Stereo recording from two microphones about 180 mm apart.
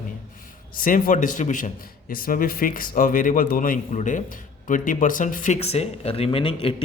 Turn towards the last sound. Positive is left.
turn(degrees=30)  # may be behind; listen again after turning